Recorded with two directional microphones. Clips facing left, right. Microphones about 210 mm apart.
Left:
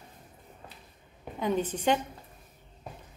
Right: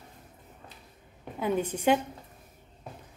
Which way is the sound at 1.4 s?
10° right (ahead or behind).